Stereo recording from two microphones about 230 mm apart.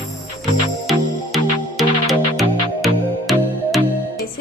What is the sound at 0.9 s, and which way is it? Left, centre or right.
Music, centre.